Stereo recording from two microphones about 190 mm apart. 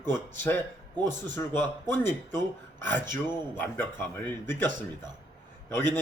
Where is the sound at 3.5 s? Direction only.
10° left (ahead or behind).